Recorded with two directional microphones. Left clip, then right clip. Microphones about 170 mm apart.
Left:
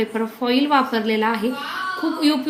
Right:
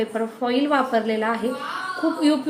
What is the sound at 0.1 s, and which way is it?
A woman's voice, 60° left (ahead or behind).